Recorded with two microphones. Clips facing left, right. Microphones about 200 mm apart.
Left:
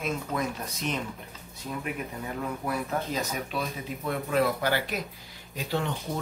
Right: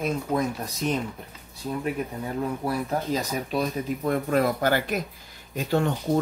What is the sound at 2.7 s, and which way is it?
Speech, 35° right (ahead or behind).